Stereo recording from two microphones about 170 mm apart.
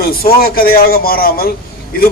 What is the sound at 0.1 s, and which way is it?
A man's voice, 60° left (ahead or behind).